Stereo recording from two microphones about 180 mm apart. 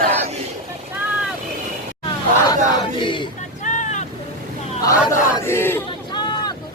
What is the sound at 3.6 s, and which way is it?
Boat, 45° left (ahead or behind).